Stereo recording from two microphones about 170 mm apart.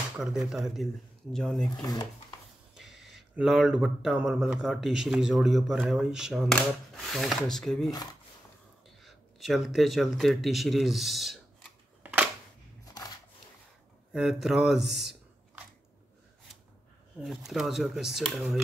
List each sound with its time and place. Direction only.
0.2 s speech: 5° right (ahead or behind)
1.8 s speech: 20° left (ahead or behind)
2.7 s speech: centre (ahead or behind)
9.0 s a sound: centre (ahead or behind)
14.1 s speech: centre (ahead or behind)
17.2 s speech: centre (ahead or behind)